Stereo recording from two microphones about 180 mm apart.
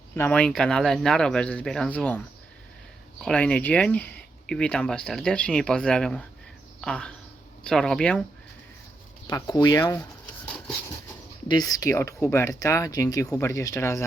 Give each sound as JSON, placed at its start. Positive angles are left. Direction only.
{"t": 0.2, "sound": "speech", "side_deg": 5}
{"t": 9.2, "sound": "speech", "side_deg": 20}
{"t": 11.4, "sound": "speech", "side_deg": 20}